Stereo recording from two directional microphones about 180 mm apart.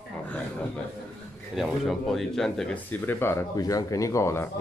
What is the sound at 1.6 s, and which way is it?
Speech, centre (ahead or behind).